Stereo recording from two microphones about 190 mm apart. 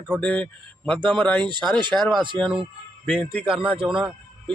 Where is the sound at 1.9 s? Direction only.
5° left (ahead or behind).